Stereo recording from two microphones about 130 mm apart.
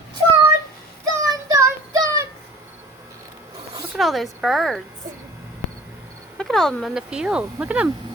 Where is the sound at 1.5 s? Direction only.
25° right (ahead or behind).